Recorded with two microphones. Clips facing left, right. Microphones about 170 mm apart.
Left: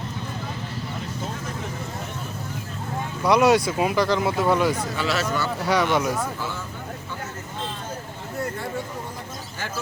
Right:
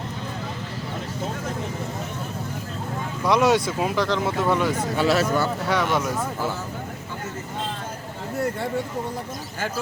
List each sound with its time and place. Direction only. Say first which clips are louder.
3.2 s speech: left 1 dB; centre (ahead or behind)
4.9 s speech: right 5 dB; 55° right (ahead or behind)
5.2 s speech: right 3 dB; 5° right (ahead or behind)